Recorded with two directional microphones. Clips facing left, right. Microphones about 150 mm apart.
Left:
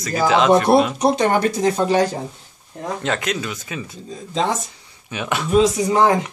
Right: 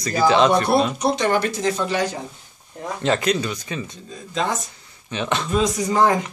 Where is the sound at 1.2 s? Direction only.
50° left (ahead or behind).